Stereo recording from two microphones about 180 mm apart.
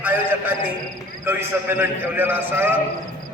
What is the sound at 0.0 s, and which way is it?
A man's voice, 10° right (ahead or behind).